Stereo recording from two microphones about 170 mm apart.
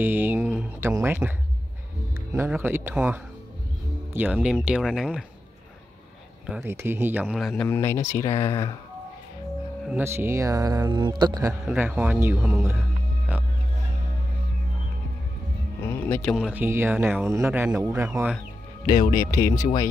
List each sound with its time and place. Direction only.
0.0 s a sound: 10° right (ahead or behind)
0.7 s speech: 15° right (ahead or behind)
2.3 s speech: 15° right (ahead or behind)
6.6 s speech: 15° right (ahead or behind)
7.3 s speech: centre (ahead or behind)
7.6 s speech: 15° left (ahead or behind)
9.8 s speech: 15° right (ahead or behind)
11.6 s speech: 10° right (ahead or behind)
15.8 s speech: 10° left (ahead or behind)
16.3 s speech: 5° right (ahead or behind)
18.9 s speech: 55° left (ahead or behind)
19.5 s speech: 20° left (ahead or behind)